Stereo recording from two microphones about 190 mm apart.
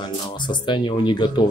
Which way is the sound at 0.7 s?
25° left (ahead or behind).